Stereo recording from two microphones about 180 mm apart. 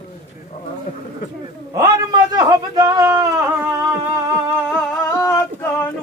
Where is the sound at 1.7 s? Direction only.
20° right (ahead or behind).